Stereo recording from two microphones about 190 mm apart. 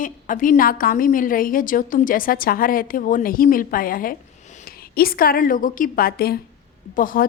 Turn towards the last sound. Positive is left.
turn(degrees=45)  # may be behind; listen again after turning